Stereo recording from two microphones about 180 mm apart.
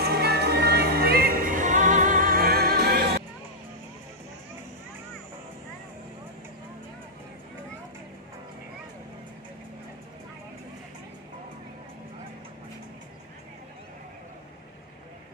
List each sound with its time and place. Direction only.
0.0 s music: 60° right (ahead or behind)